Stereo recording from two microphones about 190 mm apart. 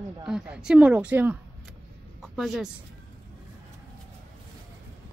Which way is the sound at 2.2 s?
Centre (ahead or behind).